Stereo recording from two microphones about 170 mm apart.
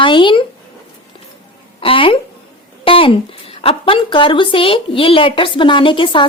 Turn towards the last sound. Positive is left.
turn(degrees=30)  # may be behind; listen again after turning